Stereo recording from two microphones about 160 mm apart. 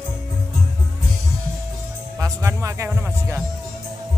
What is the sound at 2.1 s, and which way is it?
Music, 20° right (ahead or behind).